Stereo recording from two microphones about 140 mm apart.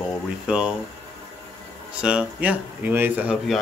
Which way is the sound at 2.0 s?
10° right (ahead or behind).